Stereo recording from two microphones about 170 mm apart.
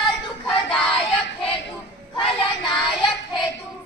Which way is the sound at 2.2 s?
30° left (ahead or behind).